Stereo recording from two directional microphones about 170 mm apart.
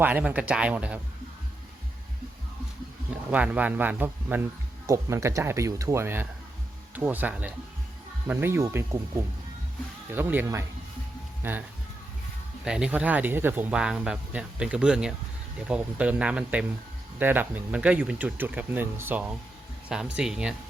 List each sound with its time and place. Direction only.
0.0 s speech: 10° right (ahead or behind)
3.2 s speech: 10° right (ahead or behind)
12.6 s speech: 5° right (ahead or behind)